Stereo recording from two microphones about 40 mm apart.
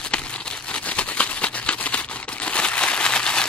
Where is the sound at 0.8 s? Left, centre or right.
Left.